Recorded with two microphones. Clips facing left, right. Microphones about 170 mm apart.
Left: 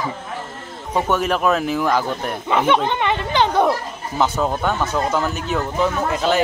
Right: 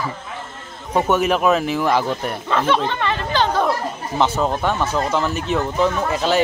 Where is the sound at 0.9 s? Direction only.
5° right (ahead or behind).